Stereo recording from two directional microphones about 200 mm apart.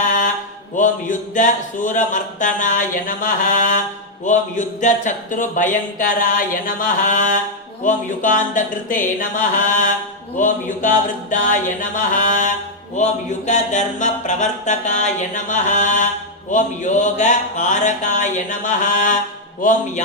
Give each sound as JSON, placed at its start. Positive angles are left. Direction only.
{"t": 0.0, "sound": "mantra", "side_deg": 40}
{"t": 0.8, "sound": "speech", "side_deg": 40}